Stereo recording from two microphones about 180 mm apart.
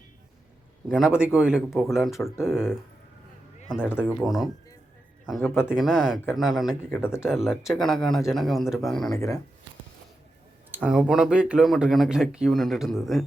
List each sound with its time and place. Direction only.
0.9 s speech: 5° right (ahead or behind)
3.9 s speech: 5° right (ahead or behind)
5.5 s speech: 10° left (ahead or behind)
5.7 s speech: 5° right (ahead or behind)
9.1 s speech: 15° left (ahead or behind)
10.7 s speech: 5° right (ahead or behind)